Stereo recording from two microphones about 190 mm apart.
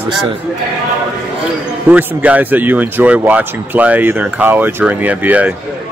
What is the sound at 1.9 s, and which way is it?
Speech, 10° right (ahead or behind).